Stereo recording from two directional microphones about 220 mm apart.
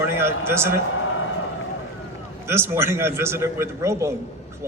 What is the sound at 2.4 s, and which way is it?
Speech, 10° right (ahead or behind).